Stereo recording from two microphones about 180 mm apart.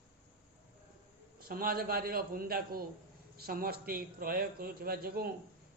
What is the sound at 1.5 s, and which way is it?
Speech, 55° right (ahead or behind).